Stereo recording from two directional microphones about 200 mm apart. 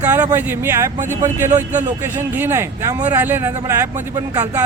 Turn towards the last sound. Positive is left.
turn(degrees=-15)  # may be behind; listen again after turning